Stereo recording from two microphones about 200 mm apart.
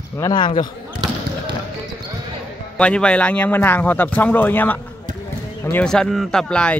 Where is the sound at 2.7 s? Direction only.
5° left (ahead or behind).